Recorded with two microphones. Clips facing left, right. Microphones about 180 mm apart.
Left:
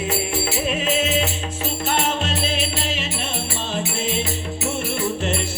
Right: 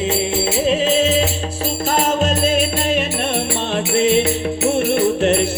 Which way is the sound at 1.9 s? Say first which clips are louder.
Right 8 dB; 45° right (ahead or behind).